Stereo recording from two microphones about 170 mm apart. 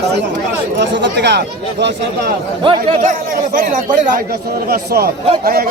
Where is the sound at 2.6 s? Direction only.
40° right (ahead or behind).